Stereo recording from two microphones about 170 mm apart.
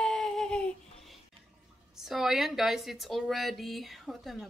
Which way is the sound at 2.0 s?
Centre (ahead or behind).